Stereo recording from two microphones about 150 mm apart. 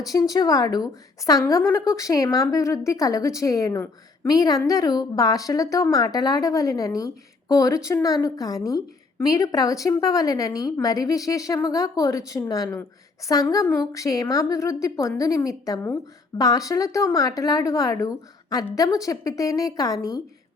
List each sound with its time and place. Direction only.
0.0 s speech: 25° left (ahead or behind)